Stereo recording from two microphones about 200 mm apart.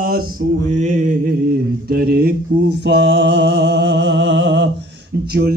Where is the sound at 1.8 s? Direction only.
50° right (ahead or behind).